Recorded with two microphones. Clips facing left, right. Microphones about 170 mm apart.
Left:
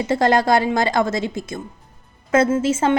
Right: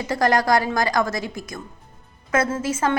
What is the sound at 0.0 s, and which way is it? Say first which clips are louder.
A woman's voice: left 3 dB; 25° left (ahead or behind).